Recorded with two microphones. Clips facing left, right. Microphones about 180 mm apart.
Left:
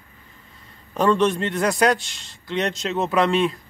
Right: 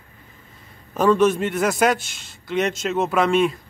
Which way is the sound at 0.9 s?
5° right (ahead or behind).